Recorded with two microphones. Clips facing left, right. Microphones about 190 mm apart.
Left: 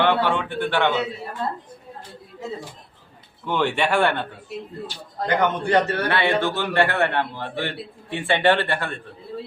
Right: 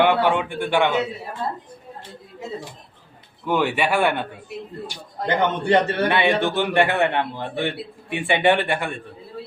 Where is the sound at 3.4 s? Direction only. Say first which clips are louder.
Right 1 dB; 10° right (ahead or behind).